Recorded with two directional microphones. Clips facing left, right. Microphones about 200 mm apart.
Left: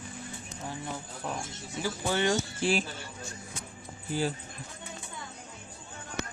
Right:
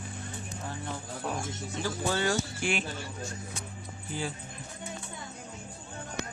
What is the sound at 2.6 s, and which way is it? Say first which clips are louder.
Speech: left 6 dB; 35° left (ahead or behind).